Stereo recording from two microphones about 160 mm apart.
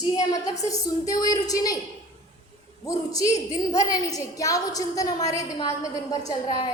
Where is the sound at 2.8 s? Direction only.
20° left (ahead or behind).